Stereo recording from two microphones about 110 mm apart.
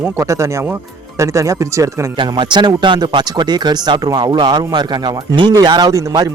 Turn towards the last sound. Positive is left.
turn(degrees=-35)  # may be behind; listen again after turning